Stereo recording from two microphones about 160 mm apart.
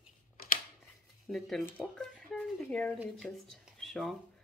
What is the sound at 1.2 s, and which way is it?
Speech, centre (ahead or behind).